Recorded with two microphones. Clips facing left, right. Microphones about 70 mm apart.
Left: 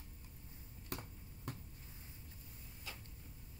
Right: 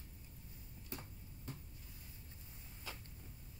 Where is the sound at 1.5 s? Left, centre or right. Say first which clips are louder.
Left 3 dB; left.